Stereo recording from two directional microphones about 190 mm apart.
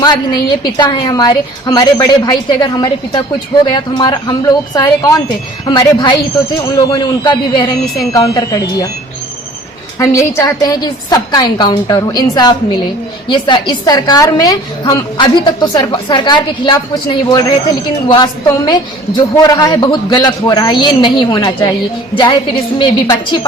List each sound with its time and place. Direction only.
0.0 s a woman's voice: 20° left (ahead or behind)
10.0 s a woman's voice: 15° left (ahead or behind)
22.8 s a woman's voice: 25° left (ahead or behind)